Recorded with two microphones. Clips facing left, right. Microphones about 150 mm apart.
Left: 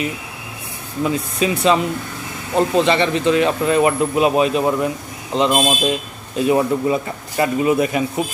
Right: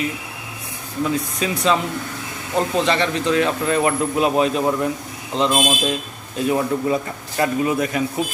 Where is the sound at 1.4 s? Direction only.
10° left (ahead or behind).